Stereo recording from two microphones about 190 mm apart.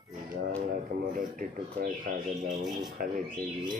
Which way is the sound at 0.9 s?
50° right (ahead or behind).